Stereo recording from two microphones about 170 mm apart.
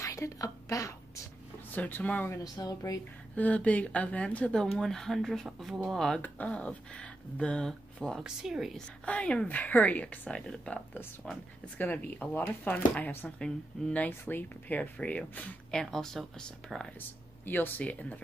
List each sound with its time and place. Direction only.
0.0 s a sound: 20° left (ahead or behind)
1.7 s speech: 10° left (ahead or behind)
3.3 s speech: 10° left (ahead or behind)